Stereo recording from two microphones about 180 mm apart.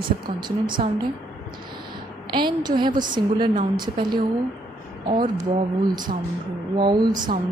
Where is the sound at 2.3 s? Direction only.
25° right (ahead or behind).